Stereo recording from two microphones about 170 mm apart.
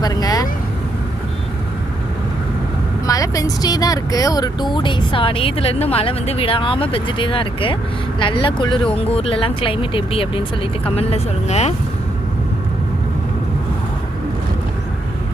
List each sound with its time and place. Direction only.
0.0 s vehicle: 25° left (ahead or behind)
3.1 s speech: 20° left (ahead or behind); by 11.7 s 40° left (ahead or behind)